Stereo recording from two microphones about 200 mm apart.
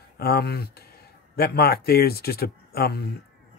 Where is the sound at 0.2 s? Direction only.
50° left (ahead or behind).